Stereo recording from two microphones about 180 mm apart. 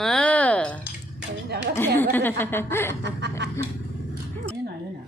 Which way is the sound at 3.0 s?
70° right (ahead or behind).